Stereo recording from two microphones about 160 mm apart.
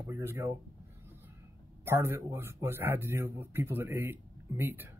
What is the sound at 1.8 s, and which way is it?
Speech, 15° right (ahead or behind).